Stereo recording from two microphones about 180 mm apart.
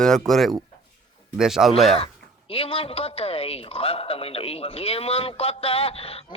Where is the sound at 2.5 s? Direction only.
30° left (ahead or behind).